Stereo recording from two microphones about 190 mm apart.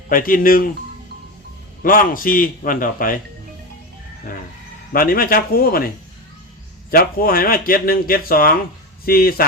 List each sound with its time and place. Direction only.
0.1 s speech: 45° left (ahead or behind)
1.8 s speech: 50° left (ahead or behind)
4.9 s speech: 50° left (ahead or behind)
6.9 s speech: 50° left (ahead or behind)